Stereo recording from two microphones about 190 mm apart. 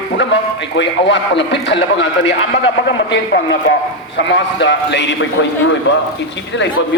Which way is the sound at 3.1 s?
70° left (ahead or behind).